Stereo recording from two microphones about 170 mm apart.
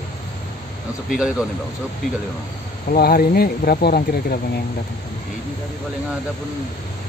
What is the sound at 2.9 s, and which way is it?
Speech, 60° left (ahead or behind).